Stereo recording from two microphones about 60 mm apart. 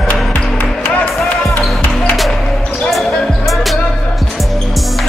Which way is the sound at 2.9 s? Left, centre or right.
Centre.